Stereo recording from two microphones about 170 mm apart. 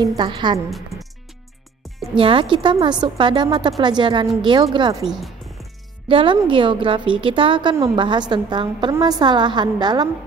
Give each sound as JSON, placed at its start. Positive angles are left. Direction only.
{"t": 0.0, "sound": "a woman's voice", "side_deg": -25}
{"t": 0.7, "sound": "speech", "side_deg": 0}
{"t": 2.1, "sound": "a woman's voice", "side_deg": -30}
{"t": 5.0, "sound": "music", "side_deg": 0}
{"t": 6.0, "sound": "a woman's voice", "side_deg": -30}